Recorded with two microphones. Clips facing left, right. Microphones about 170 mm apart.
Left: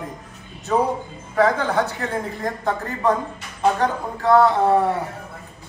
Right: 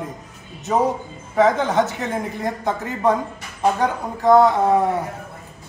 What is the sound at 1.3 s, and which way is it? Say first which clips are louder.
A man's voice: right 2 dB; 20° right (ahead or behind).